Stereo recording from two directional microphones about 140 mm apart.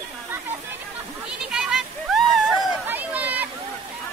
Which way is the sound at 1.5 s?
5° right (ahead or behind).